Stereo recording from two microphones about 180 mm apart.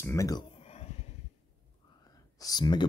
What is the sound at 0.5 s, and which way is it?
Whispering, 35° left (ahead or behind).